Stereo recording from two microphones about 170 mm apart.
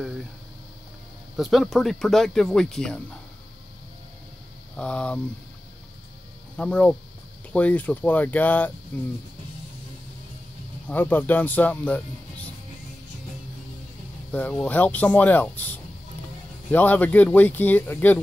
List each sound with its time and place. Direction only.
1.3 s speech: centre (ahead or behind)
4.7 s speech: 5° left (ahead or behind)
6.5 s speech: 5° left (ahead or behind)
10.9 s speech: 10° left (ahead or behind)
14.3 s speech: 10° left (ahead or behind)